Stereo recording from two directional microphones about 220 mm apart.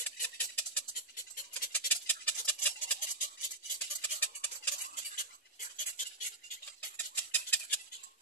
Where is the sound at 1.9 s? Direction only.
10° left (ahead or behind).